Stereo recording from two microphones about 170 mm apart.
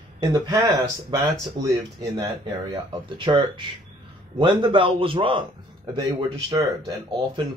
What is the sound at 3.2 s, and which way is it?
Speech, 30° right (ahead or behind).